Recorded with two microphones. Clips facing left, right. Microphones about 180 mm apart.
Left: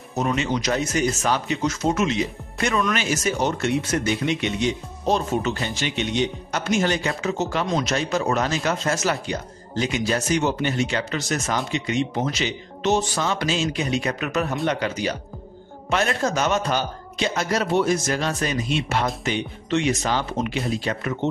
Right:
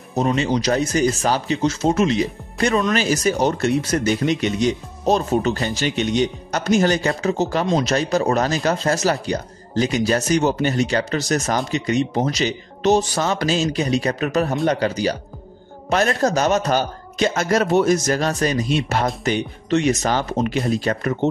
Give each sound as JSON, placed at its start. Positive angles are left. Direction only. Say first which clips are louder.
{"t": 0.1, "sound": "speech", "louder": "right 4 dB", "side_deg": -30}
{"t": 7.6, "sound": "speech", "louder": "right 4 dB", "side_deg": -25}
{"t": 7.9, "sound": "speech", "louder": "right 4 dB", "side_deg": -40}